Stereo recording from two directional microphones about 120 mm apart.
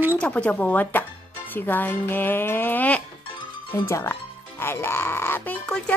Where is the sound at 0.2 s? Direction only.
10° left (ahead or behind).